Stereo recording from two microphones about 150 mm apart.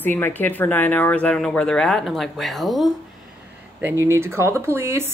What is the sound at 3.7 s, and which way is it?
Speech, 15° right (ahead or behind).